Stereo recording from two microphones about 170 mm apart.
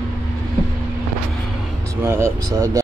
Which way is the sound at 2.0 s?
15° right (ahead or behind).